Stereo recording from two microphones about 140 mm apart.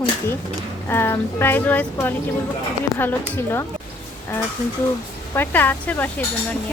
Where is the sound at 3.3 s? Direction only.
15° left (ahead or behind).